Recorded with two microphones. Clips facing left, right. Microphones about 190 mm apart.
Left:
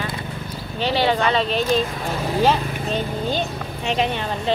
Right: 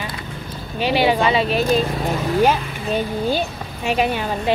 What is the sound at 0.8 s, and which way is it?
Speech, 10° right (ahead or behind).